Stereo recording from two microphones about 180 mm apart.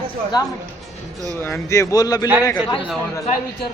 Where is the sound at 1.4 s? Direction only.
15° left (ahead or behind).